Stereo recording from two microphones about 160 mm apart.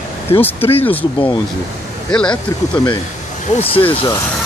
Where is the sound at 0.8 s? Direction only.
10° left (ahead or behind).